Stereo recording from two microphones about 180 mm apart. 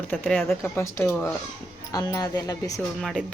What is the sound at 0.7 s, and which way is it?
Speech, 15° left (ahead or behind).